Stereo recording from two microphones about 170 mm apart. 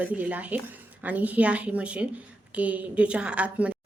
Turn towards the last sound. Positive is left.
turn(degrees=-5)  # may be behind; listen again after turning